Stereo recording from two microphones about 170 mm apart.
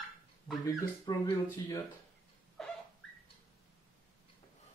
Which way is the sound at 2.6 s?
5° left (ahead or behind).